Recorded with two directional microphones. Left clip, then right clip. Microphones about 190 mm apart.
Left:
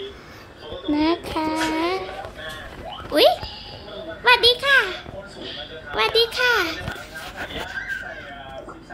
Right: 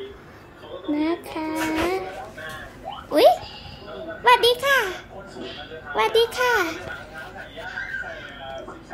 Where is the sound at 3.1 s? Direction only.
20° right (ahead or behind).